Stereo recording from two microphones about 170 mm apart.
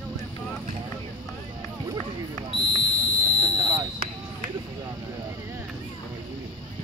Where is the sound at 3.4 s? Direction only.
20° right (ahead or behind).